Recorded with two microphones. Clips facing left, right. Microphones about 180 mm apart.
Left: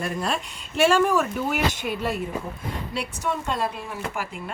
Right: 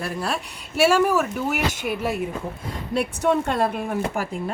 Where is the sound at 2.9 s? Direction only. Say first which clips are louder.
Right 9 dB; 60° right (ahead or behind).